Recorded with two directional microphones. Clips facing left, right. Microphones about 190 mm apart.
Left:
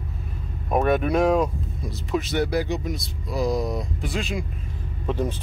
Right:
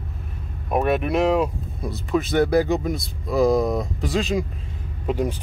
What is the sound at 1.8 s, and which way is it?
Speech, 55° right (ahead or behind).